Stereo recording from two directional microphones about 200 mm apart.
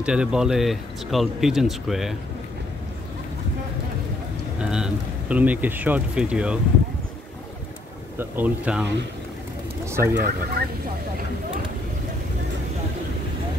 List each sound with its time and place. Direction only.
0.0 s speech: 5° right (ahead or behind)
4.6 s speech: 5° right (ahead or behind)
8.2 s speech: 10° right (ahead or behind)
9.8 s speech: 15° right (ahead or behind)
10.6 s speech: 50° right (ahead or behind)